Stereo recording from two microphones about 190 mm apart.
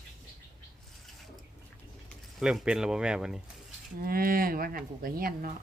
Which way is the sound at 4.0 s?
50° right (ahead or behind).